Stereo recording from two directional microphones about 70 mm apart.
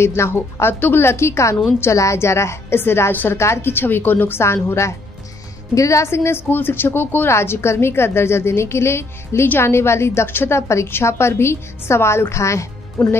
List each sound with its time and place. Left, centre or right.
0.0 s speech: left
13.0 s speech: left